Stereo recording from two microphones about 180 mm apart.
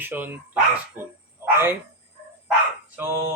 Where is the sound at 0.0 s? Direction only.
10° right (ahead or behind).